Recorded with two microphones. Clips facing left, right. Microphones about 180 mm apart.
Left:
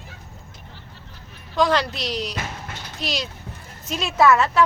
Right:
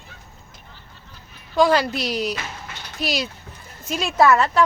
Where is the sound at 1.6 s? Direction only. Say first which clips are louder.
Right 3 dB; 5° right (ahead or behind).